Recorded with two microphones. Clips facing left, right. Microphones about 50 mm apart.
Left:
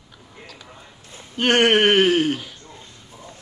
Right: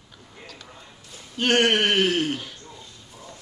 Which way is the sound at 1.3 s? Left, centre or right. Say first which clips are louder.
Left 4 dB; left.